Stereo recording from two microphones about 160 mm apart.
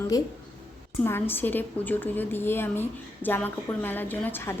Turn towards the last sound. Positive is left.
turn(degrees=10)  # may be behind; listen again after turning